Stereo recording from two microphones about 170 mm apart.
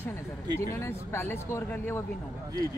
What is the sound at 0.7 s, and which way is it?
Speech, 15° left (ahead or behind).